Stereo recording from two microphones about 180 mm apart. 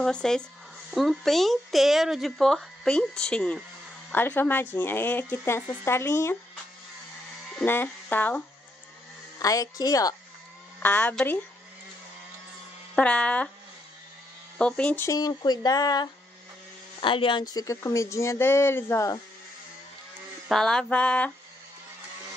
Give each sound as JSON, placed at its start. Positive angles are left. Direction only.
{"t": 0.0, "sound": "speech", "side_deg": 5}
{"t": 7.5, "sound": "speech", "side_deg": 10}
{"t": 10.8, "sound": "speech", "side_deg": 10}
{"t": 12.9, "sound": "speech", "side_deg": 5}
{"t": 14.6, "sound": "speech", "side_deg": 5}
{"t": 15.0, "sound": "speech", "side_deg": 20}
{"t": 20.4, "sound": "speech", "side_deg": 5}